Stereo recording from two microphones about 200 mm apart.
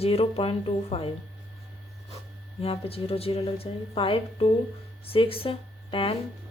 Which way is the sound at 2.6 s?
30° left (ahead or behind).